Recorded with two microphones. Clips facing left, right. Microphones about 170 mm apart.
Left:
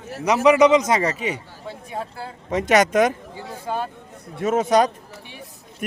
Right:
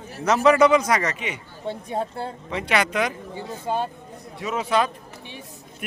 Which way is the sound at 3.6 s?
20° right (ahead or behind).